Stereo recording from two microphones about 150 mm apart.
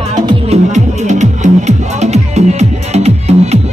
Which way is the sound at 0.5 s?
50° right (ahead or behind).